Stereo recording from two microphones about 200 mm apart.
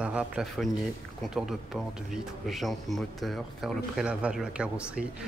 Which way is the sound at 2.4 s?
Centre (ahead or behind).